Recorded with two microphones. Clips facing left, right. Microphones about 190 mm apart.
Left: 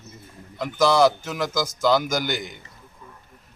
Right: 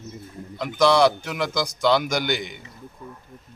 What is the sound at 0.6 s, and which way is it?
Speech, 5° left (ahead or behind).